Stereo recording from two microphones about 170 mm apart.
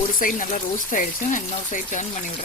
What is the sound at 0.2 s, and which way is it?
Speech, 55° left (ahead or behind).